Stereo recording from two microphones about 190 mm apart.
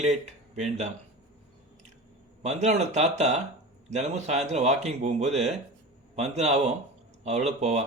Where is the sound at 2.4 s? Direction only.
35° right (ahead or behind).